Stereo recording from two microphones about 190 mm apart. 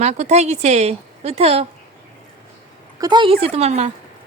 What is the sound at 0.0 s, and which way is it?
A woman's voice, 35° right (ahead or behind).